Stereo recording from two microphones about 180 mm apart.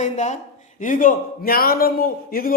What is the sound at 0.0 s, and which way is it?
A man's voice, 40° left (ahead or behind).